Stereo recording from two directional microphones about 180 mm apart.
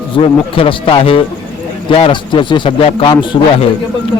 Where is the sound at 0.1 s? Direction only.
30° left (ahead or behind).